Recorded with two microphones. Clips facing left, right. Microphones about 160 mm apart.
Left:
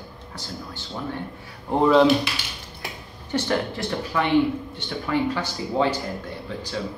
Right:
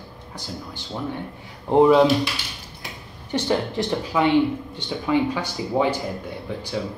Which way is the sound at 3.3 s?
15° right (ahead or behind).